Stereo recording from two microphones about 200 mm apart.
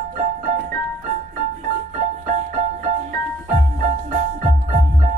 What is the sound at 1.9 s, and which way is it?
Music, 40° right (ahead or behind).